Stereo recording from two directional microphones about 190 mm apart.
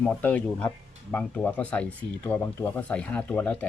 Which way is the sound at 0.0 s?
10° left (ahead or behind).